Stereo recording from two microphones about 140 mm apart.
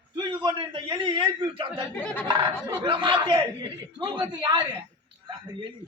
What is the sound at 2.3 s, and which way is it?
A man's voice, 30° right (ahead or behind).